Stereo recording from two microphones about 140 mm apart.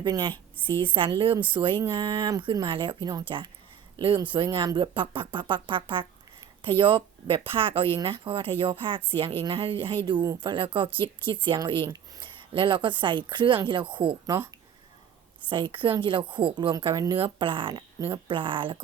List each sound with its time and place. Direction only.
0.0 s speech: 30° right (ahead or behind)
15.4 s speech: 35° right (ahead or behind)